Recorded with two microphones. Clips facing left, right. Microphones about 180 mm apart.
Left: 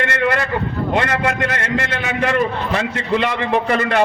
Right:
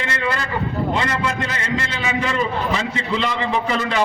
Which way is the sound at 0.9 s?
60° left (ahead or behind).